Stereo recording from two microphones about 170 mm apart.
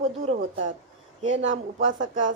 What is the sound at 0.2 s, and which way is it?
Speech, 40° right (ahead or behind).